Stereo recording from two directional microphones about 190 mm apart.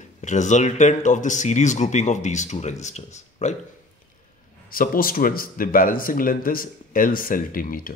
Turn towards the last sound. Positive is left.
turn(degrees=50)  # may be behind; listen again after turning